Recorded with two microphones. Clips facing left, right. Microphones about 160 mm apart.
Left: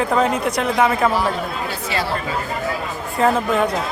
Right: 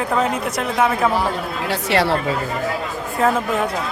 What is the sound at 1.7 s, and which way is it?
Speech, 70° right (ahead or behind).